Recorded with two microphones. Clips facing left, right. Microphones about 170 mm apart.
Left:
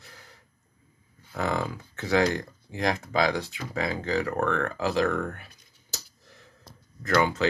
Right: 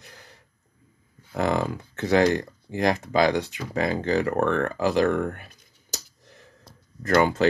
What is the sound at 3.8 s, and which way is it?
Speech, 55° right (ahead or behind).